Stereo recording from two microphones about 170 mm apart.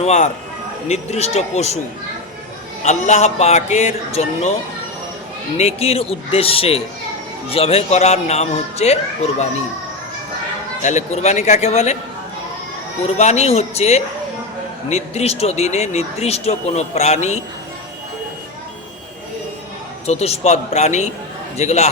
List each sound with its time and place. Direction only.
0.0 s speech: 40° left (ahead or behind)
2.8 s speech: 40° left (ahead or behind)
5.5 s speech: 35° left (ahead or behind)
10.8 s speech: 40° left (ahead or behind)
13.1 s speech: 40° left (ahead or behind)
20.1 s speech: 40° left (ahead or behind)